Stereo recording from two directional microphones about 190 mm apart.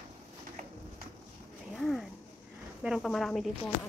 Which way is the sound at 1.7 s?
Centre (ahead or behind).